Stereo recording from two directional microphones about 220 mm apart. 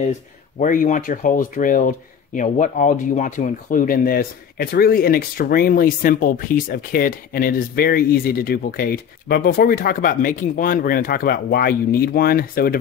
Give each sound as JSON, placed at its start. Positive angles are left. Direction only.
{"t": 0.6, "sound": "speech", "side_deg": 35}